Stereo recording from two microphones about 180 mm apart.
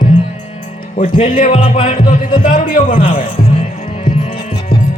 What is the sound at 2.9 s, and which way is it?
Speech, 30° left (ahead or behind).